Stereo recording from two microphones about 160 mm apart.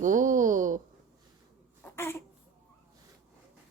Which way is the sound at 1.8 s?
15° left (ahead or behind).